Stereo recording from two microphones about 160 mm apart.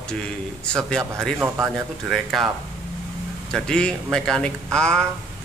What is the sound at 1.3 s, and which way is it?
Speech, 15° right (ahead or behind).